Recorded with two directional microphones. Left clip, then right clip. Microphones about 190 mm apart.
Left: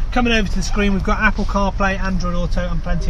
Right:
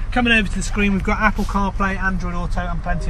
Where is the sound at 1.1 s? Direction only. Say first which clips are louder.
Left 1 dB; 40° right (ahead or behind).